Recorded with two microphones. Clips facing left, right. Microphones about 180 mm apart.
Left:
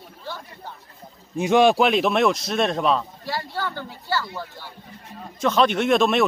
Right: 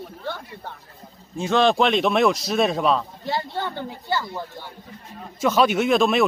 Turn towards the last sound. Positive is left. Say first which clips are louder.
# even
turn(degrees=0)  # may be behind; listen again after turning